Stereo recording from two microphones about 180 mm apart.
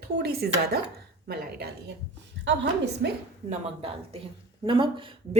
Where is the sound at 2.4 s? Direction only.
75° right (ahead or behind).